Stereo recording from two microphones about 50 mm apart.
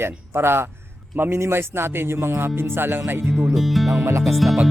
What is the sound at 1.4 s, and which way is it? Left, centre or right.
Speech, right.